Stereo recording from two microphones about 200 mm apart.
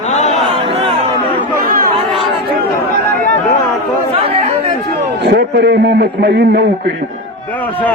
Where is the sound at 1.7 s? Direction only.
45° right (ahead or behind).